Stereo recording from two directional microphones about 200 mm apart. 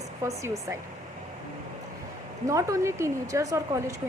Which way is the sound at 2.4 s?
15° right (ahead or behind).